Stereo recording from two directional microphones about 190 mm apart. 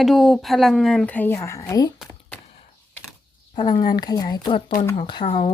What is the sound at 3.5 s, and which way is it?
A woman's voice, 20° left (ahead or behind).